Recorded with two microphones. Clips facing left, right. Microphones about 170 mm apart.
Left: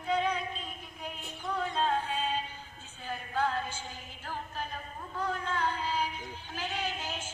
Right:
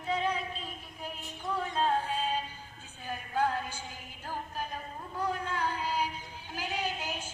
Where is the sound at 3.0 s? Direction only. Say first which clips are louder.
Right 1 dB; 15° right (ahead or behind).